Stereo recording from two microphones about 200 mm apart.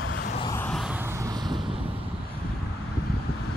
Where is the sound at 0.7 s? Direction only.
Centre (ahead or behind); by 1.8 s 20° right (ahead or behind).